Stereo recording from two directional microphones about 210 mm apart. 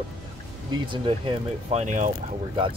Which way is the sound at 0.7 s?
25° right (ahead or behind).